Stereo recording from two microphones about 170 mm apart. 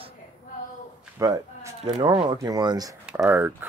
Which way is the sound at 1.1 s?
20° right (ahead or behind).